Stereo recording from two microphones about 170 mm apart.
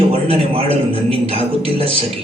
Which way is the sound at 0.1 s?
35° right (ahead or behind).